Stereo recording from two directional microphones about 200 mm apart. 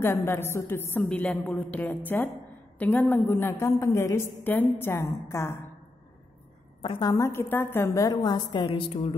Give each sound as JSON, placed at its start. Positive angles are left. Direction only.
{"t": 0.0, "sound": "a woman's voice", "side_deg": 10}
{"t": 6.8, "sound": "a woman's voice", "side_deg": 20}